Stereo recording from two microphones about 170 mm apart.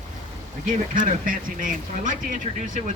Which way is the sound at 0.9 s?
50° right (ahead or behind).